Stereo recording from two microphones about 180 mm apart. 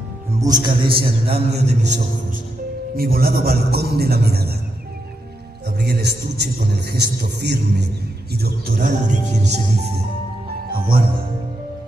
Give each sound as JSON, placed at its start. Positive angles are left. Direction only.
{"t": 0.4, "sound": "a man's voice", "side_deg": -20}
{"t": 3.0, "sound": "a man's voice", "side_deg": -55}
{"t": 5.8, "sound": "a man's voice", "side_deg": -65}